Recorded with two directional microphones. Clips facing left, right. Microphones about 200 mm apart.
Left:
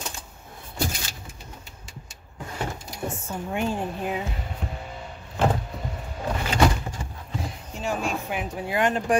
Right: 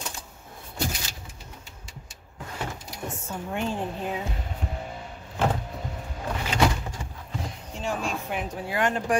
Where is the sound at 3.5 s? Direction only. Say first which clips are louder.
Left 2 dB; 10° left (ahead or behind).